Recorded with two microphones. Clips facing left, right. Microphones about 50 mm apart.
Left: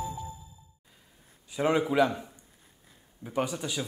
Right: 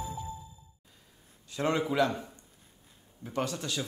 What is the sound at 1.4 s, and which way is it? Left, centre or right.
Speech, centre.